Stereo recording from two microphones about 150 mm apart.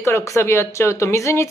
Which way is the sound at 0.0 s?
20° left (ahead or behind).